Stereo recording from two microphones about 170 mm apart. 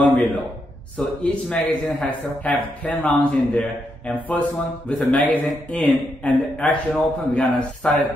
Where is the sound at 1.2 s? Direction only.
5° left (ahead or behind).